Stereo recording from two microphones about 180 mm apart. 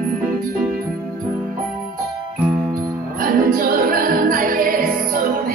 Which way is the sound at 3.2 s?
50° right (ahead or behind).